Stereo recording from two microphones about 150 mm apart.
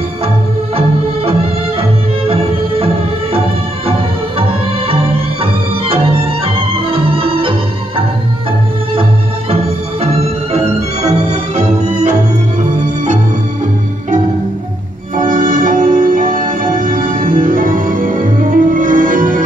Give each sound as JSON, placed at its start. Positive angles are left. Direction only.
{"t": 1.8, "sound": "music", "side_deg": -40}
{"t": 4.4, "sound": "music", "side_deg": -40}
{"t": 10.1, "sound": "music", "side_deg": -45}
{"t": 15.1, "sound": "music", "side_deg": -65}